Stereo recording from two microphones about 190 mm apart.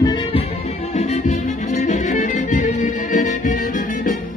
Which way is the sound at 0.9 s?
35° left (ahead or behind).